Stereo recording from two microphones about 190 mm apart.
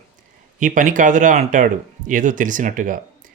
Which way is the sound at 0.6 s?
45° right (ahead or behind).